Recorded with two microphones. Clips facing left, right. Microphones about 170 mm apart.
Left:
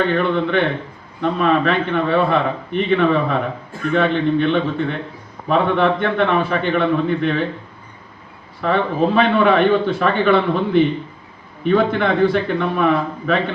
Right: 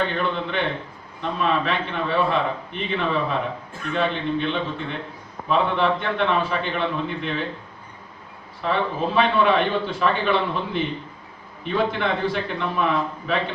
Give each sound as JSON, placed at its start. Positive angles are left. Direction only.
{"t": 0.1, "sound": "speech", "side_deg": 60}
{"t": 8.6, "sound": "speech", "side_deg": 60}